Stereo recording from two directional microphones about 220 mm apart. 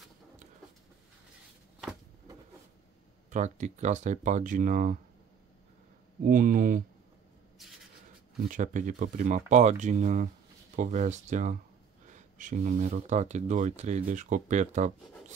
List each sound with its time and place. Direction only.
3.3 s speech: 35° right (ahead or behind)
6.2 s speech: 40° right (ahead or behind)
8.5 s speech: 35° right (ahead or behind)